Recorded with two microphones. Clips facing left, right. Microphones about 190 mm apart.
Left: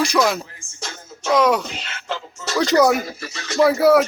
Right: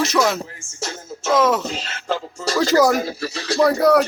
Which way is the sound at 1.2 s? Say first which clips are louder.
Even; 5° right (ahead or behind).